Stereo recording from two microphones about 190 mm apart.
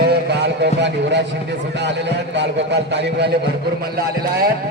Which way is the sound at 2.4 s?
65° right (ahead or behind).